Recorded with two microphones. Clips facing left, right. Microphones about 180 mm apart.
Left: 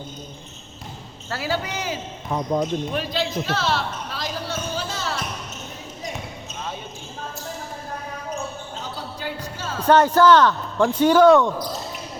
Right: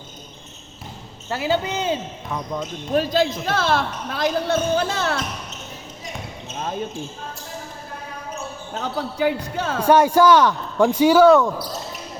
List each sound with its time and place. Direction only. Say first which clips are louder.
1.3 s a man's voice: right 4 dB; 20° right (ahead or behind)
2.3 s speech: left 5 dB; 30° left (ahead or behind)
2.9 s a man's voice: right 6 dB; 45° right (ahead or behind)
8.7 s speech: right 6 dB; 65° right (ahead or behind)
9.8 s speech: right 1 dB; 10° right (ahead or behind)